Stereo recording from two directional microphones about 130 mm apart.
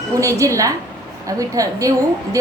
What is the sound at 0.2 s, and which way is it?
A woman's voice, 25° right (ahead or behind).